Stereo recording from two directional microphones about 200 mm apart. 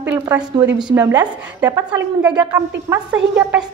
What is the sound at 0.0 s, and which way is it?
A woman's voice, 10° right (ahead or behind).